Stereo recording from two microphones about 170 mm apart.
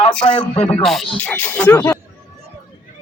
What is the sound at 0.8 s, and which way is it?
Speech, centre (ahead or behind).